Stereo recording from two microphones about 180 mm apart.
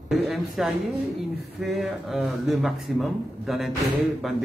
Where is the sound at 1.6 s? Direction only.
Centre (ahead or behind).